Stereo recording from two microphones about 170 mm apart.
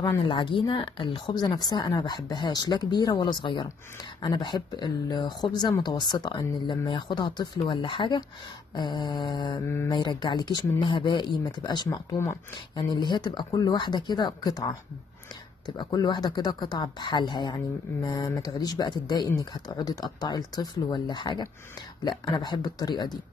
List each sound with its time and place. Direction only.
0.0 s speech: 30° left (ahead or behind)